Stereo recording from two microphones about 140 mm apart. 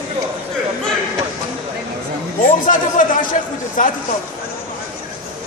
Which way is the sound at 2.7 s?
70° left (ahead or behind).